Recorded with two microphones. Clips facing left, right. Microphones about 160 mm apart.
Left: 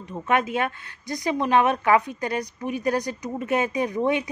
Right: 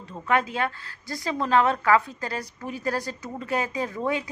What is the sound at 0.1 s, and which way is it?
Speech, 20° left (ahead or behind).